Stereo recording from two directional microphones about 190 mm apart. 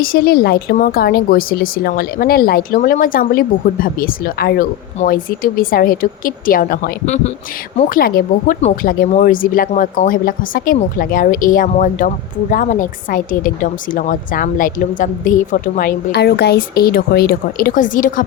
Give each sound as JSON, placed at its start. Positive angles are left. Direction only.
{"t": 0.0, "sound": "speech", "side_deg": 50}